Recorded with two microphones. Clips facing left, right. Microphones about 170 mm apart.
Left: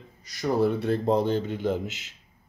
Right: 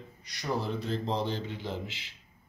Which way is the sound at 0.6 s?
60° left (ahead or behind).